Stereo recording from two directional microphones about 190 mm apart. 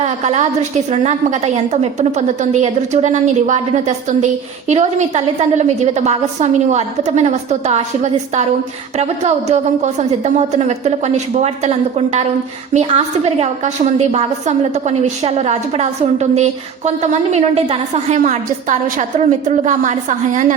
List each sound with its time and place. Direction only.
0.0 s a woman's voice: 35° right (ahead or behind)